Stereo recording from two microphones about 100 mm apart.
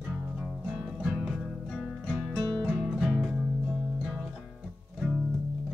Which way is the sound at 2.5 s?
5° right (ahead or behind).